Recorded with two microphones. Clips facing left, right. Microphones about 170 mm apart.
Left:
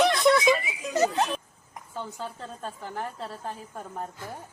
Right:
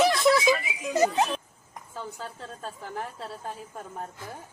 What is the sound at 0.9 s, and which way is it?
Speech, 10° right (ahead or behind).